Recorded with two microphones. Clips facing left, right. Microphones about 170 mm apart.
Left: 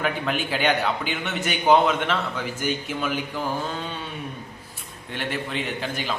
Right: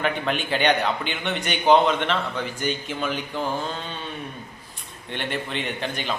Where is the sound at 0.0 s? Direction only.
5° left (ahead or behind).